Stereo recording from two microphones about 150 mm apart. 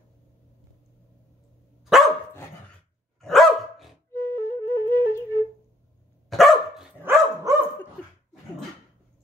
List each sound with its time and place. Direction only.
1.9 s dog: 5° right (ahead or behind)
3.2 s dog: centre (ahead or behind)
4.1 s flute: 15° left (ahead or behind)
6.3 s dog: centre (ahead or behind)
7.0 s dog: 15° right (ahead or behind)